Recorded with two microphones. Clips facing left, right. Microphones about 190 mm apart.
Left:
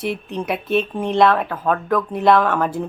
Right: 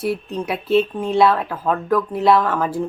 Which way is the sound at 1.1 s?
Centre (ahead or behind).